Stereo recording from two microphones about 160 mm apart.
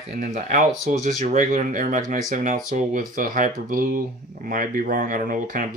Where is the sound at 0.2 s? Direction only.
50° right (ahead or behind).